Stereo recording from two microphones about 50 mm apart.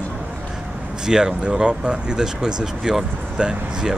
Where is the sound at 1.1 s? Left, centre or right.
Centre.